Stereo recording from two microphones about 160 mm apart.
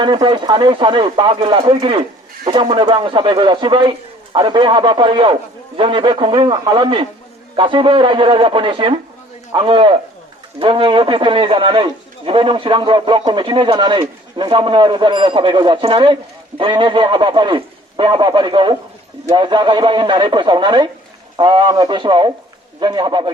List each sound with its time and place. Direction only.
0.0 s a man's voice: 30° right (ahead or behind)